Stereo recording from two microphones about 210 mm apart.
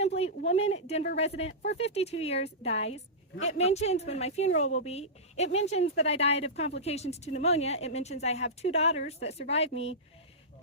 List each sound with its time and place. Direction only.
0.2 s speech: 30° left (ahead or behind)